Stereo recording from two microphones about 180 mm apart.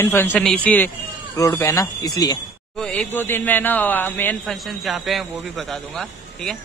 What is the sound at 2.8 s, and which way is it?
Speech, 5° left (ahead or behind).